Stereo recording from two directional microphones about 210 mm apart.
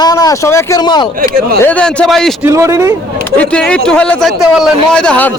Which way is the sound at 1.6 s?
5° left (ahead or behind).